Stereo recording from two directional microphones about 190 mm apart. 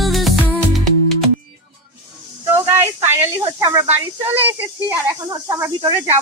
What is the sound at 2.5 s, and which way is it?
Snake, 15° right (ahead or behind).